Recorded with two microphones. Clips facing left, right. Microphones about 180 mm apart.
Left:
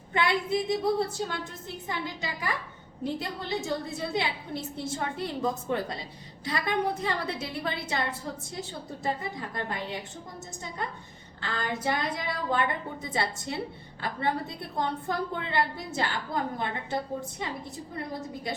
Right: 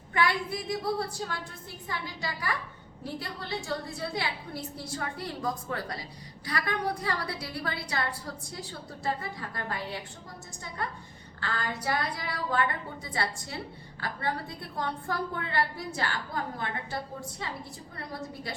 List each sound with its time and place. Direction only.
0.1 s a woman's voice: 25° left (ahead or behind)